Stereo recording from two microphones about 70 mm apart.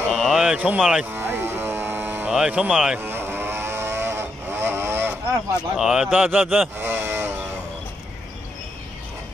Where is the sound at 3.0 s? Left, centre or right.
Right.